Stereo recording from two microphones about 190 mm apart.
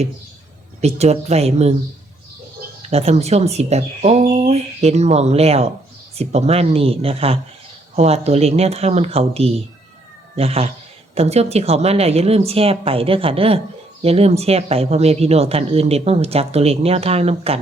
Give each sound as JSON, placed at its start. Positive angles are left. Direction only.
{"t": 0.8, "sound": "speech", "side_deg": -35}
{"t": 2.8, "sound": "speech", "side_deg": -30}